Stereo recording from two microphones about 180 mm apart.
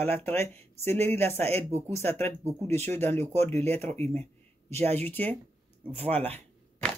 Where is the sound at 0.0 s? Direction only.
10° left (ahead or behind).